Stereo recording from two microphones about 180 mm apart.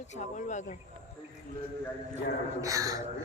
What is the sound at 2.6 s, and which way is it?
Speech, 20° right (ahead or behind).